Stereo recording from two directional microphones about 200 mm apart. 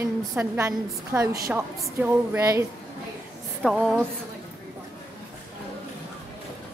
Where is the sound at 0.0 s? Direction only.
15° right (ahead or behind).